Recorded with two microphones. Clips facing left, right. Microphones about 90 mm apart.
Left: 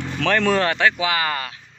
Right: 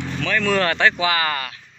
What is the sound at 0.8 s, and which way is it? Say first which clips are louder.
Speech: right 1 dB; 10° left (ahead or behind).